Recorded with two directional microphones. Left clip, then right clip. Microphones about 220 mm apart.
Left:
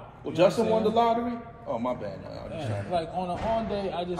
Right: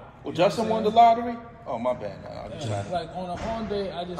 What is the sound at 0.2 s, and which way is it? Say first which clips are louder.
Speech: even; 15° right (ahead or behind).